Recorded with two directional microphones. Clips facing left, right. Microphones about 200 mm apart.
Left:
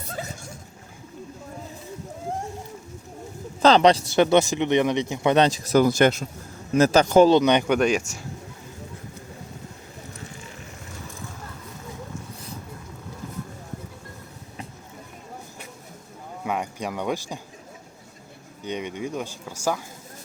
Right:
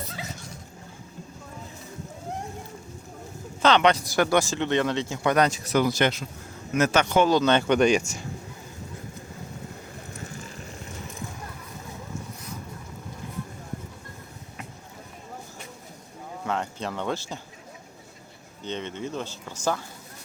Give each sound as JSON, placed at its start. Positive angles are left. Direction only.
{"t": 0.1, "sound": "a sound", "side_deg": 50}
{"t": 3.6, "sound": "speech", "side_deg": 35}
{"t": 6.7, "sound": "speech", "side_deg": 35}
{"t": 7.3, "sound": "speech", "side_deg": 15}
{"t": 7.8, "sound": "speech", "side_deg": 5}
{"t": 16.4, "sound": "a sound", "side_deg": 15}
{"t": 18.6, "sound": "speech", "side_deg": 10}